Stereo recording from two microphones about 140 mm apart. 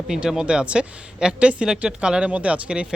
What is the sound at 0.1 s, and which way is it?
Speech, 5° right (ahead or behind).